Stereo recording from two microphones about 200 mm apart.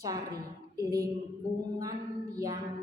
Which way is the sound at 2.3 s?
15° right (ahead or behind).